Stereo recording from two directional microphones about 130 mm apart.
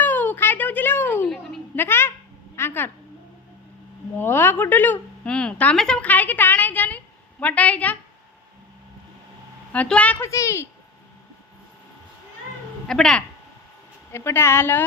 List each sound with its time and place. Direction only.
0.0 s a sound: 15° left (ahead or behind)
4.1 s a woman's voice: 15° left (ahead or behind)
9.7 s a woman's voice: 10° left (ahead or behind)
12.9 s speech: 5° left (ahead or behind)
14.1 s a woman's voice: 20° left (ahead or behind)